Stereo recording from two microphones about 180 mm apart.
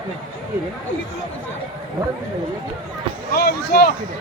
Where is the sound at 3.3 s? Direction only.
60° left (ahead or behind).